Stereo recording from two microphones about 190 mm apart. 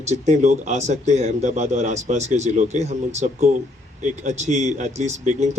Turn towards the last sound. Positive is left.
turn(degrees=-35)  # may be behind; listen again after turning